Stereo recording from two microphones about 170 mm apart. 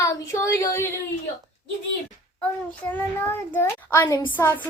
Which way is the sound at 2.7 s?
10° left (ahead or behind).